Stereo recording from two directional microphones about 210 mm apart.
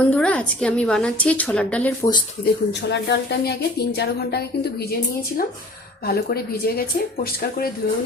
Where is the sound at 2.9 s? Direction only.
55° left (ahead or behind).